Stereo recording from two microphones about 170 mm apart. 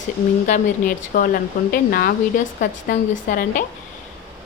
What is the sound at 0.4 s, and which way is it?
A woman's voice, 45° left (ahead or behind).